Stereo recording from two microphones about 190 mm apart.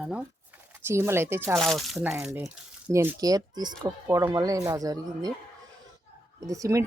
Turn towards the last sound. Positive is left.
turn(degrees=-15)  # may be behind; listen again after turning